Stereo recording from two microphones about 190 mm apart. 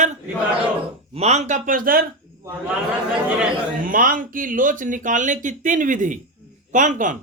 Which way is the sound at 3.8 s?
45° right (ahead or behind).